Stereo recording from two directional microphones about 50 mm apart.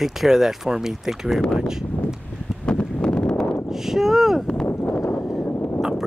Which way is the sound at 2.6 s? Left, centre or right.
Left.